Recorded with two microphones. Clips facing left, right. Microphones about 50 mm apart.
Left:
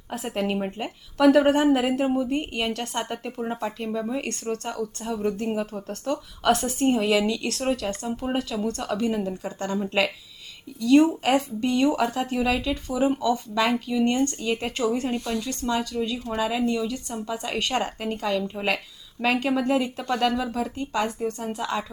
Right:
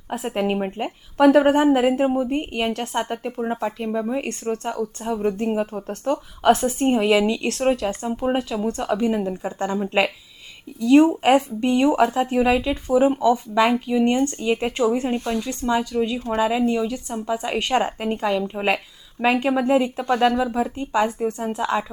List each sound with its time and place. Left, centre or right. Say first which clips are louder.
0.1 s speech: right 4 dB; right
16.4 s speech: right 4 dB; centre